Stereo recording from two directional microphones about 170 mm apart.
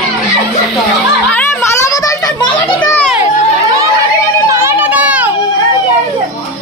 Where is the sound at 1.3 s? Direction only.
10° left (ahead or behind).